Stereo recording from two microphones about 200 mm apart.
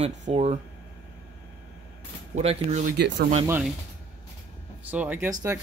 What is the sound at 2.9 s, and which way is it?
Speech, 60° right (ahead or behind).